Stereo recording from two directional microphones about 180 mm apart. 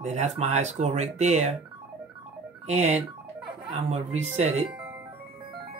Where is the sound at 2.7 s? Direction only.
40° right (ahead or behind).